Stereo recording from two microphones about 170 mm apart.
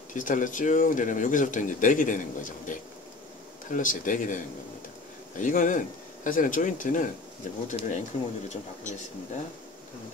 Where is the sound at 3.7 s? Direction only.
50° left (ahead or behind).